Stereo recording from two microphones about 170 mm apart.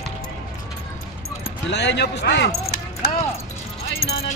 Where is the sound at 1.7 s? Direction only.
90° left; by 3.2 s 70° left (ahead or behind).